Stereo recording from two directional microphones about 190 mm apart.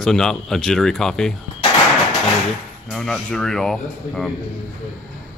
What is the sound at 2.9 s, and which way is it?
Speech, 5° left (ahead or behind).